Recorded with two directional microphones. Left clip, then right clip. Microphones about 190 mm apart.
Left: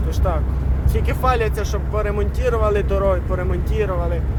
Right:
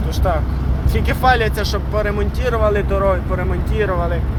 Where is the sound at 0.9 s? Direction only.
Centre (ahead or behind).